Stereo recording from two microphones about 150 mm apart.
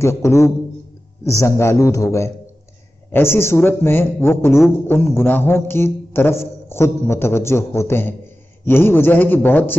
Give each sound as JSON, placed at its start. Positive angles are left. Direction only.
{"t": 0.0, "sound": "a man's voice", "side_deg": 20}